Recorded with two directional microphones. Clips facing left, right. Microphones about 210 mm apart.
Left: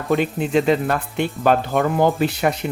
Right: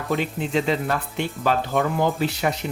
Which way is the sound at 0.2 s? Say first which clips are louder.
Left 5 dB; 55° left (ahead or behind).